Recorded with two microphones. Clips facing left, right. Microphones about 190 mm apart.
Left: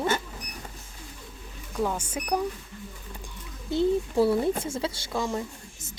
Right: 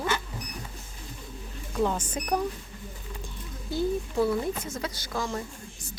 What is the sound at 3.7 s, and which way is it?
Speech, 30° left (ahead or behind).